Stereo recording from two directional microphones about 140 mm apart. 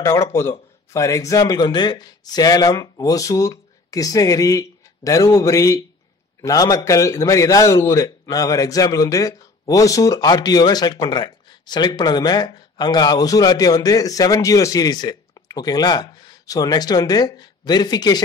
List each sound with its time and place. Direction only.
0.0 s a man's voice: 20° left (ahead or behind)